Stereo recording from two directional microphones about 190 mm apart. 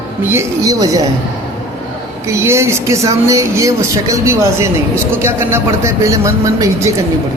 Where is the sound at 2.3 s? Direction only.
15° right (ahead or behind).